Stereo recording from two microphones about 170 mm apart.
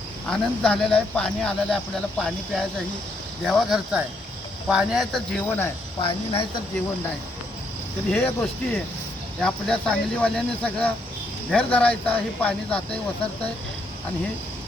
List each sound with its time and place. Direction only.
0.3 s speech: 5° left (ahead or behind)
6.0 s speech: 30° left (ahead or behind)
8.1 s speech: 10° left (ahead or behind)